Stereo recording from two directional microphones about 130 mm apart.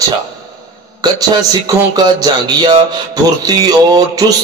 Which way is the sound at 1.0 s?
30° right (ahead or behind).